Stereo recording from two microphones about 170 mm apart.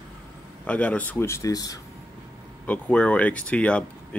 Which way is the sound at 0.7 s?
10° left (ahead or behind).